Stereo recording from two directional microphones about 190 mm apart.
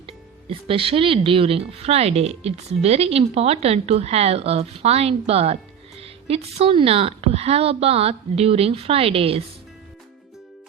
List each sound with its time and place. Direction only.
0.4 s speech: 30° right (ahead or behind)